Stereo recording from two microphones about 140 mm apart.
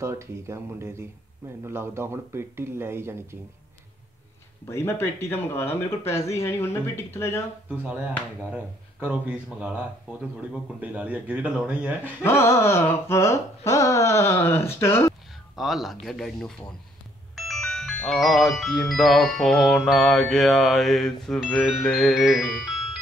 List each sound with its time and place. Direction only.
0.0 s speech: 20° right (ahead or behind)
4.6 s speech: 20° left (ahead or behind)
7.7 s speech: 10° right (ahead or behind)
12.2 s speech: 15° left (ahead or behind)
15.5 s music: centre (ahead or behind)